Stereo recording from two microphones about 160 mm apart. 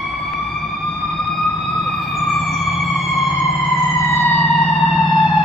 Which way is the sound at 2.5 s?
Centre (ahead or behind).